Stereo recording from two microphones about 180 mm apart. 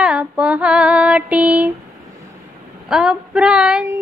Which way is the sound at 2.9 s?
5° right (ahead or behind).